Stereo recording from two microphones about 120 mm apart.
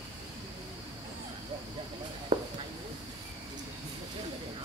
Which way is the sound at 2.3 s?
40° right (ahead or behind).